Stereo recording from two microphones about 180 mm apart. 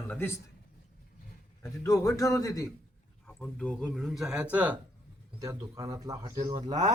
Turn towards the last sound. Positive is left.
turn(degrees=-20)  # may be behind; listen again after turning